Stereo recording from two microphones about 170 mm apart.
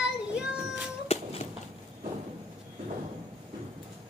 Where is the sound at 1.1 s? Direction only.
35° left (ahead or behind).